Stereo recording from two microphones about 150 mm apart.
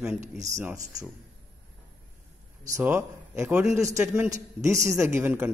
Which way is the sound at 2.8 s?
15° right (ahead or behind).